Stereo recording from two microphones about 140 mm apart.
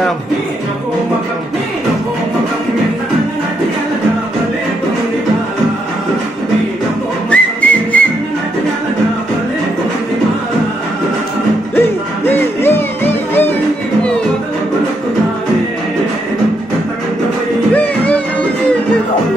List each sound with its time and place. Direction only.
7.2 s music: 10° left (ahead or behind)
12.3 s music: 15° left (ahead or behind)
17.7 s music: 10° left (ahead or behind)